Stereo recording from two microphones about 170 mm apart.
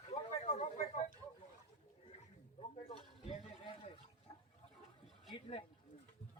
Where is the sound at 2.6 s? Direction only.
35° left (ahead or behind).